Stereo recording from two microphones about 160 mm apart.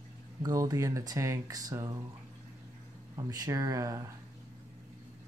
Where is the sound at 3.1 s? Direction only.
20° right (ahead or behind).